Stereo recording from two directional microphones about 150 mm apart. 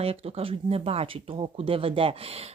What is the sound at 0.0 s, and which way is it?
Speech, 40° right (ahead or behind).